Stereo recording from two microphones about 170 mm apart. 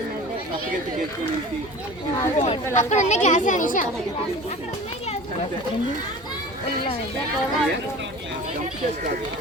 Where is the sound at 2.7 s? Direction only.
45° left (ahead or behind).